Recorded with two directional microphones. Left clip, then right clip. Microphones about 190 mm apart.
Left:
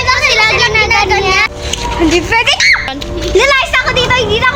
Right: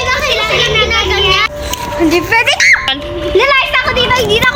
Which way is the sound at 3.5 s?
15° left (ahead or behind).